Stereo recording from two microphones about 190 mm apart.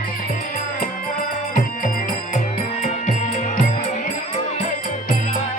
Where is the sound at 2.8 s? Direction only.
40° left (ahead or behind).